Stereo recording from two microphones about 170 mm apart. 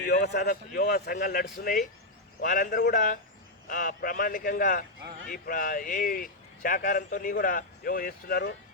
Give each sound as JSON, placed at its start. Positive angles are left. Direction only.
{"t": 0.3, "sound": "speech", "side_deg": 65}